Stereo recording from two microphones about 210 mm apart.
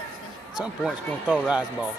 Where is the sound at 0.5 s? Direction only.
Centre (ahead or behind).